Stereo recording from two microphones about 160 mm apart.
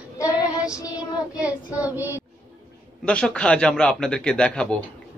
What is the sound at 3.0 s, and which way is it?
A man's voice, 5° left (ahead or behind).